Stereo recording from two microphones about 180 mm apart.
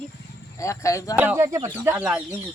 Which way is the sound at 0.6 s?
15° left (ahead or behind).